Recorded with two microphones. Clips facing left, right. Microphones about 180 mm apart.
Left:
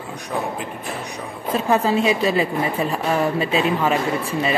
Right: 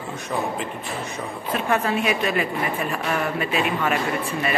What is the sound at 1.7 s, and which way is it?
Speech, 25° left (ahead or behind).